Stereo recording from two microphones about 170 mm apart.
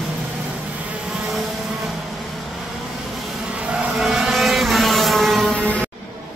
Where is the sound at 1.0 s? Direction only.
Centre (ahead or behind).